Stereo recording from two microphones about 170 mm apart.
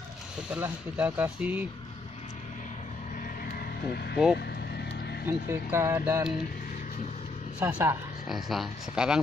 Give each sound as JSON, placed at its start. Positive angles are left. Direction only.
{"t": 0.5, "sound": "speech", "side_deg": -10}
{"t": 3.4, "sound": "vehicle", "side_deg": 65}
{"t": 5.2, "sound": "speech", "side_deg": -15}
{"t": 7.6, "sound": "speech", "side_deg": -10}
{"t": 8.3, "sound": "speech", "side_deg": 0}